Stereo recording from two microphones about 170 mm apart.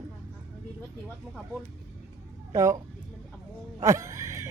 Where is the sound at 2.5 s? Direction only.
15° right (ahead or behind).